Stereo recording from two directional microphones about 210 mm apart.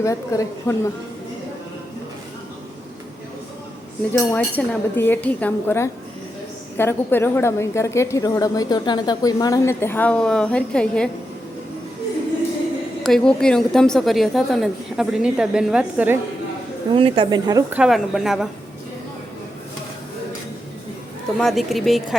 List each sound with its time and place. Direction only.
0.0 s a woman's voice: 15° left (ahead or behind)
4.1 s a woman's voice: 10° left (ahead or behind)
13.0 s a woman's voice: centre (ahead or behind)
16.9 s speech: 25° right (ahead or behind)
17.7 s a woman's voice: centre (ahead or behind)
21.3 s a woman's voice: centre (ahead or behind)